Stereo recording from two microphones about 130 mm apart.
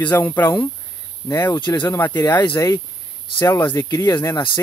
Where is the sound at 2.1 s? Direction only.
35° left (ahead or behind); by 3.8 s 15° left (ahead or behind).